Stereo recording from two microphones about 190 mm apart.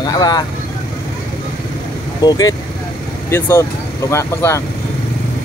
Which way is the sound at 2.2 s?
20° left (ahead or behind).